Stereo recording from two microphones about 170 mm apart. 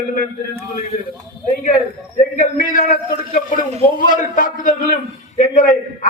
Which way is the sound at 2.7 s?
55° left (ahead or behind).